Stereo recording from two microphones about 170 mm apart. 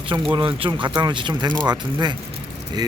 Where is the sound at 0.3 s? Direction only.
30° right (ahead or behind).